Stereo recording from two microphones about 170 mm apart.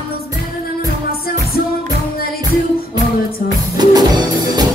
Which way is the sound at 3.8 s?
25° right (ahead or behind).